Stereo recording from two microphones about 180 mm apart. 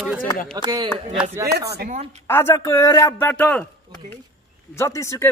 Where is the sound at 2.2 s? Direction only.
15° left (ahead or behind).